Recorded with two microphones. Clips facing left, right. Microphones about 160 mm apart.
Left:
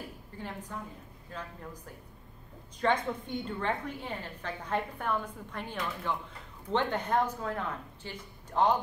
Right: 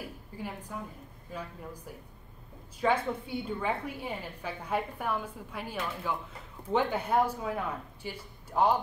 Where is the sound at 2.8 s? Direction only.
5° right (ahead or behind).